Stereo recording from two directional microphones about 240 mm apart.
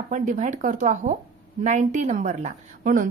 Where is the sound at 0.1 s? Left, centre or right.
Right.